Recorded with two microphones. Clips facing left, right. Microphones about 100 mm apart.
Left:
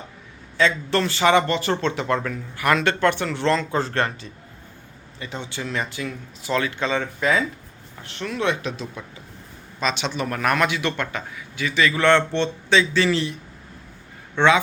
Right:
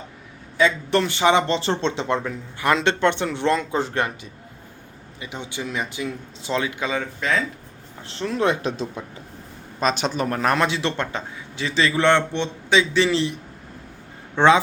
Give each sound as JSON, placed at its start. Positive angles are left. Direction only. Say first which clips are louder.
{"t": 0.5, "sound": "a man's voice", "louder": "right 1 dB", "side_deg": -15}
{"t": 8.0, "sound": "speech", "louder": "right 3 dB", "side_deg": -30}
{"t": 9.8, "sound": "a man's voice", "louder": "right 3 dB", "side_deg": -40}
{"t": 14.3, "sound": "speech", "louder": "right 2 dB", "side_deg": -35}